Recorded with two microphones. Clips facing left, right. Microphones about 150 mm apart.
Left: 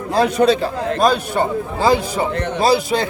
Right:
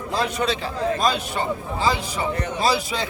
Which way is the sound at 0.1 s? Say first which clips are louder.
Left 9 dB; 45° left (ahead or behind).